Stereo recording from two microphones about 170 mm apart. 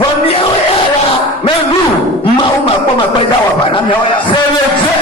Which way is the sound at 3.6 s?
30° left (ahead or behind).